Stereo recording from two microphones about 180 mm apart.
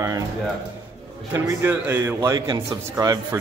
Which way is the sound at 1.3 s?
15° right (ahead or behind).